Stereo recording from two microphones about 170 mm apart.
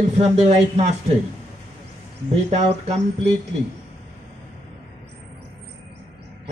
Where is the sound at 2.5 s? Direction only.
40° right (ahead or behind).